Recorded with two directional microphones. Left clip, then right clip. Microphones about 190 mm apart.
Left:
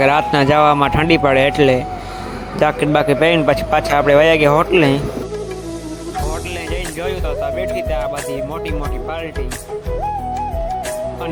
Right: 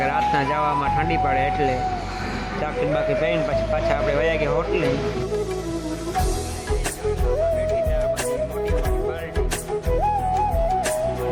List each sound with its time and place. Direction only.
0.0 s a man's voice: 35° left (ahead or behind)